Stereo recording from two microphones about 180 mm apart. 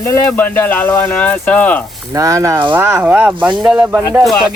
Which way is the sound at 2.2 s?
20° right (ahead or behind).